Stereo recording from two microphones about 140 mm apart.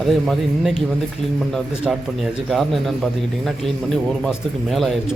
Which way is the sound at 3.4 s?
5° left (ahead or behind).